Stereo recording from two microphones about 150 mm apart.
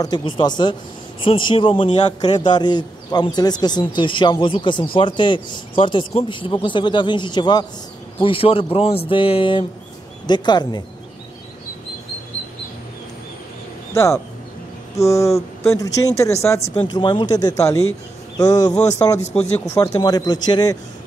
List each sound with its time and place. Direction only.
0.0 s a man's voice: 30° left (ahead or behind)
13.9 s speech: 20° left (ahead or behind)
16.6 s speech: 35° left (ahead or behind)
19.1 s speech: 50° left (ahead or behind)
19.7 s speech: 20° left (ahead or behind)